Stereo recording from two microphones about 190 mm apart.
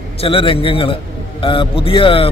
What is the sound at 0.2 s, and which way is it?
A man's voice, 30° left (ahead or behind).